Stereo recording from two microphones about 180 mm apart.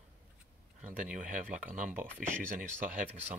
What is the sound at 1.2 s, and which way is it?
Speech, 45° right (ahead or behind).